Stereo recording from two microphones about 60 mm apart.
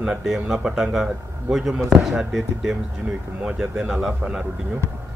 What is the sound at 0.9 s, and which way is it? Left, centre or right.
A man's voice, centre.